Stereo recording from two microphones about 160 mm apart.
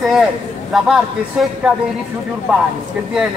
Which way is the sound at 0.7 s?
5° right (ahead or behind).